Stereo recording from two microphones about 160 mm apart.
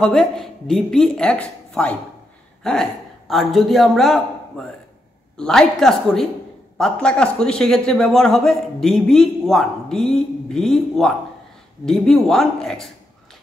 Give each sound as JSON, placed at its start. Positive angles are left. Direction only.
{"t": 0.0, "sound": "a man's voice", "side_deg": 0}